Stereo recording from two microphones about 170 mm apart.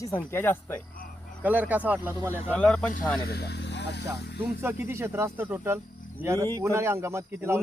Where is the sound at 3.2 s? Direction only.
70° left (ahead or behind).